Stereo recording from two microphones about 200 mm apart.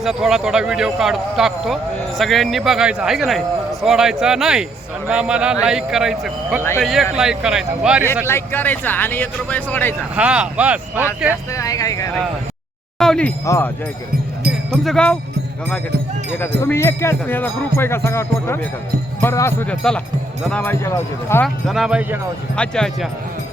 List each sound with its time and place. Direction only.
0.0 s speech: centre (ahead or behind)
8.3 s speech: 10° left (ahead or behind)
10.2 s speech: 5° right (ahead or behind)
11.5 s speech: 15° left (ahead or behind)
13.0 s a sound: 5° left (ahead or behind)
13.4 s speech: 15° left (ahead or behind)
14.8 s speech: 5° left (ahead or behind)
16.6 s speech: 10° left (ahead or behind)
21.4 s speech: centre (ahead or behind)